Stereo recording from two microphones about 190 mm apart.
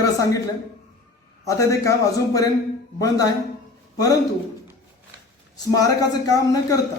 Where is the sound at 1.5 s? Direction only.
15° left (ahead or behind).